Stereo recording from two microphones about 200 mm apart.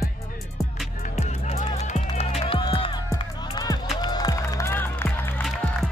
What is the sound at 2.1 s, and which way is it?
Music, 30° left (ahead or behind).